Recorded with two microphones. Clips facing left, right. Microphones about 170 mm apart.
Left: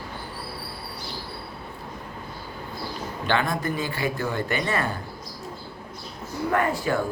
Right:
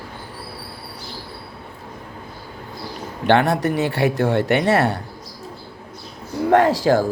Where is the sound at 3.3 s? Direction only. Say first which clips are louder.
Right 8 dB; 70° right (ahead or behind).